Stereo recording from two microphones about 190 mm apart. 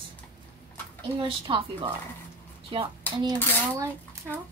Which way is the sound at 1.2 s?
25° right (ahead or behind).